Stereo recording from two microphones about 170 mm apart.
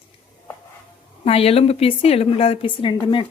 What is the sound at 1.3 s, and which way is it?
A woman's voice, 35° left (ahead or behind).